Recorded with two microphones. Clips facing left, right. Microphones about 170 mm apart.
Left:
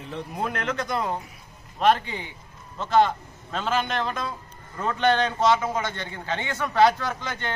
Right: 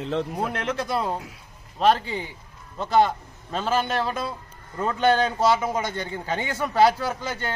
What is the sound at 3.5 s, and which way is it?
A man's voice, 5° right (ahead or behind).